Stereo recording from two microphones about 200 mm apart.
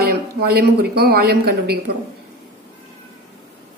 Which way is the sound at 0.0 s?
50° right (ahead or behind).